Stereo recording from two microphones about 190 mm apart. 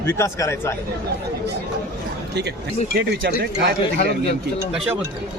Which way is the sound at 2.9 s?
60° right (ahead or behind).